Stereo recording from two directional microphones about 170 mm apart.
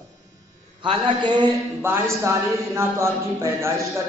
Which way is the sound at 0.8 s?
25° right (ahead or behind).